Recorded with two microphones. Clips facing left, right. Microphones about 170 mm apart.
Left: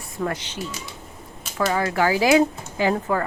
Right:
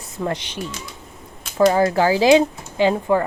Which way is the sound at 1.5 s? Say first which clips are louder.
Right 6 dB; 30° right (ahead or behind).